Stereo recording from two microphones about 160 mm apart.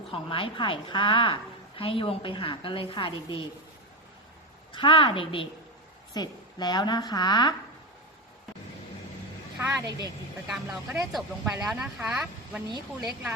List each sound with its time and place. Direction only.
0.1 s a woman's voice: 35° left (ahead or behind)
4.7 s a woman's voice: 30° left (ahead or behind)
9.6 s speech: 20° right (ahead or behind)
10.5 s speech: centre (ahead or behind)